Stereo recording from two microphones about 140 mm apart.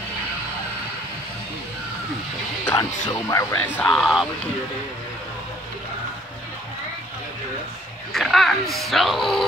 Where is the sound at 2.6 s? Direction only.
20° left (ahead or behind).